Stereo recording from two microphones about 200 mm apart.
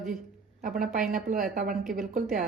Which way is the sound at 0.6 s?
45° right (ahead or behind).